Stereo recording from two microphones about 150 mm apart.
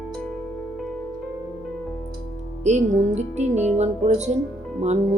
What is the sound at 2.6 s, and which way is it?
Speech, 50° right (ahead or behind).